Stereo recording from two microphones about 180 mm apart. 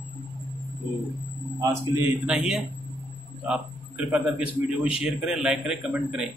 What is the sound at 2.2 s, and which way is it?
Speech, 5° right (ahead or behind).